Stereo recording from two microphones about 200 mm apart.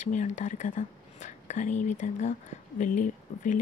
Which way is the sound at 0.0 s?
35° left (ahead or behind).